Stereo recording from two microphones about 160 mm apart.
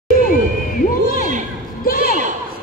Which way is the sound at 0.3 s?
60° left (ahead or behind).